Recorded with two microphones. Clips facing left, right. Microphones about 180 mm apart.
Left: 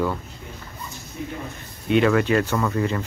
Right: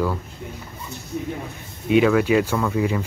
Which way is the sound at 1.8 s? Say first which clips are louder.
Right 2 dB; 5° right (ahead or behind).